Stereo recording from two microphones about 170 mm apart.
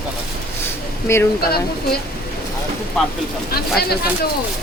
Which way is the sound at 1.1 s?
15° left (ahead or behind).